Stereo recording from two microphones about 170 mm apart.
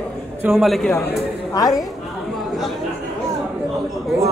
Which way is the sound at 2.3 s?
Centre (ahead or behind).